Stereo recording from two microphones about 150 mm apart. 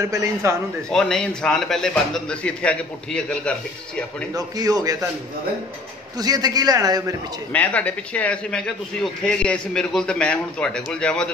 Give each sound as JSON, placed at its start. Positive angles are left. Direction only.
{"t": 0.0, "sound": "a man's voice", "side_deg": -20}
{"t": 0.8, "sound": "a man's voice", "side_deg": 5}
{"t": 4.3, "sound": "a man's voice", "side_deg": -25}
{"t": 6.1, "sound": "a man's voice", "side_deg": -25}
{"t": 7.5, "sound": "a man's voice", "side_deg": 10}